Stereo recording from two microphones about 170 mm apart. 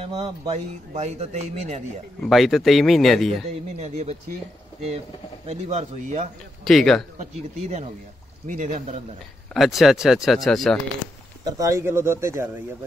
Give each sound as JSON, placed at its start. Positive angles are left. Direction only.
{"t": 0.2, "sound": "speech", "side_deg": -40}
{"t": 2.2, "sound": "speech", "side_deg": 0}
{"t": 3.7, "sound": "speech", "side_deg": -40}
{"t": 5.5, "sound": "speech", "side_deg": -40}
{"t": 6.6, "sound": "speech", "side_deg": 0}
{"t": 7.2, "sound": "speech", "side_deg": -45}
{"t": 9.5, "sound": "speech", "side_deg": 0}
{"t": 11.4, "sound": "speech", "side_deg": -20}